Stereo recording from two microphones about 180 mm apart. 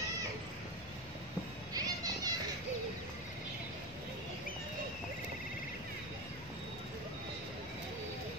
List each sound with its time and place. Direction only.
1.7 s music: 20° right (ahead or behind)